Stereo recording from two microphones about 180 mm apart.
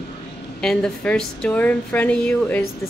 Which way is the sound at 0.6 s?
5° left (ahead or behind).